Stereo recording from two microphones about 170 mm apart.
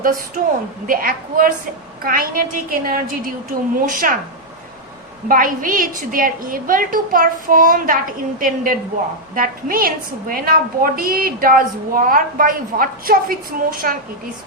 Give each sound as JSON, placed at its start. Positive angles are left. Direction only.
{"t": 0.4, "sound": "a woman's voice", "side_deg": -55}
{"t": 5.3, "sound": "a woman's voice", "side_deg": -55}